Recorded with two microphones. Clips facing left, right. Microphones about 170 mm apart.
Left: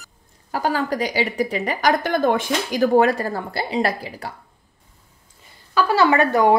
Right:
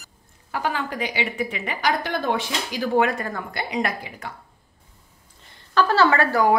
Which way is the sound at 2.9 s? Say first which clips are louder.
Left 2 dB; 35° left (ahead or behind).